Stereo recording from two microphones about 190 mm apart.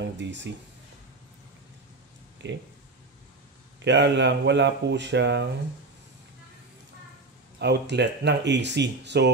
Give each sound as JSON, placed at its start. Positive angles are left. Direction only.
{"t": 0.0, "sound": "speech", "side_deg": -70}
{"t": 2.4, "sound": "speech", "side_deg": -65}
{"t": 3.8, "sound": "speech", "side_deg": -65}
{"t": 7.5, "sound": "speech", "side_deg": -60}